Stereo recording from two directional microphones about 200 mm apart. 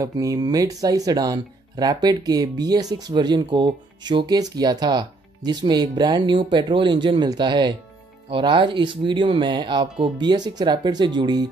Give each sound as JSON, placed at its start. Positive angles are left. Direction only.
{"t": 0.0, "sound": "speech", "side_deg": -15}